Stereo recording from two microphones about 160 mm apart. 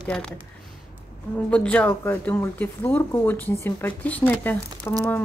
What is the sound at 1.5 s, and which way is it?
Speech, 10° left (ahead or behind).